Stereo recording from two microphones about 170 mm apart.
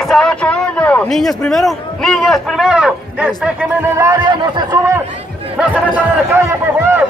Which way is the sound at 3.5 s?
15° right (ahead or behind).